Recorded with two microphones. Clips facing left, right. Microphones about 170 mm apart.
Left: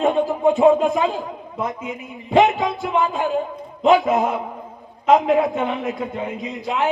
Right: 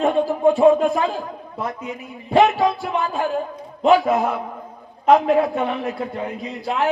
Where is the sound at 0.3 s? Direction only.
20° left (ahead or behind).